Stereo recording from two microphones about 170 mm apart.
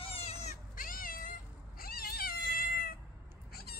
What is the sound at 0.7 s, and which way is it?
Cat, 55° left (ahead or behind).